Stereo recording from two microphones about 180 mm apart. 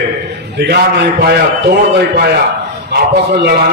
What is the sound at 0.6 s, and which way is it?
A man's voice, 65° right (ahead or behind).